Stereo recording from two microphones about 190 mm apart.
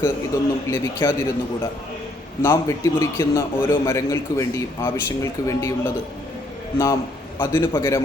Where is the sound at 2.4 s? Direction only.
15° left (ahead or behind).